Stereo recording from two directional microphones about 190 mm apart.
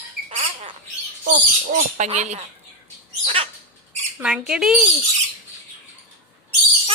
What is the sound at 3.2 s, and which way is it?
Bird, 30° right (ahead or behind).